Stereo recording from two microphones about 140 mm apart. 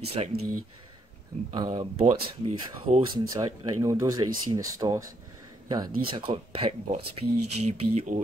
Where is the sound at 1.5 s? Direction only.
35° right (ahead or behind).